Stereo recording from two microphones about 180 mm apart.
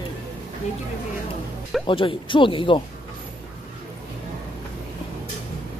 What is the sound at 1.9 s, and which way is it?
Speech, 30° left (ahead or behind).